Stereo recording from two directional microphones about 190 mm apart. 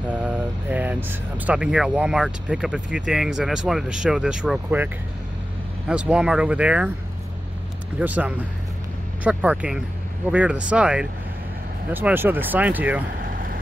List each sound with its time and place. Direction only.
0.1 s speech: 10° right (ahead or behind)
8.0 s speech: 10° right (ahead or behind)
13.2 s vehicle: 50° right (ahead or behind)